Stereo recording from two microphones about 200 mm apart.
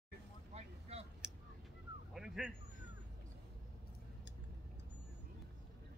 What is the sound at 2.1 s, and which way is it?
Dog, centre (ahead or behind).